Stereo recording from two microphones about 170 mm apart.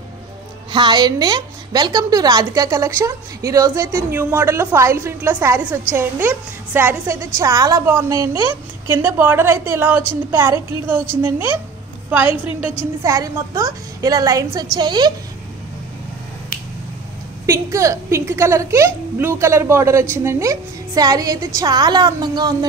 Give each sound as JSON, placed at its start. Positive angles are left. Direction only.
{"t": 0.7, "sound": "a woman's voice", "side_deg": -25}
{"t": 12.3, "sound": "a woman's voice", "side_deg": 30}
{"t": 13.0, "sound": "a woman's voice", "side_deg": -20}
{"t": 17.5, "sound": "a woman's voice", "side_deg": -20}